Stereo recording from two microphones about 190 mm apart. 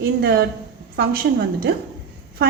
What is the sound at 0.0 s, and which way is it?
Speech, 55° right (ahead or behind).